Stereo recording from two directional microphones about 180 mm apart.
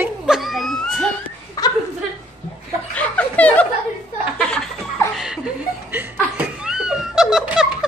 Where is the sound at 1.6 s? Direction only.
20° left (ahead or behind).